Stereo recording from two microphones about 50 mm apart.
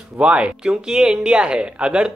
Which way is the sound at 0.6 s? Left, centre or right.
Centre.